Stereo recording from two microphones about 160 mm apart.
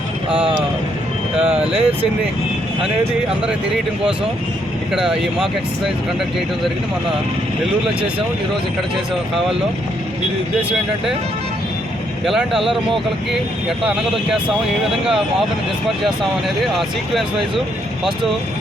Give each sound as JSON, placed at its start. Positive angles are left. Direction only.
{"t": 0.3, "sound": "speech", "side_deg": -35}
{"t": 4.9, "sound": "speech", "side_deg": -5}
{"t": 12.2, "sound": "speech", "side_deg": 0}
{"t": 15.0, "sound": "speech", "side_deg": 0}